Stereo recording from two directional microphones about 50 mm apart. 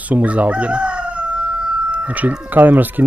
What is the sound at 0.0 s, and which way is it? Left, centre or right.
Crowing, right.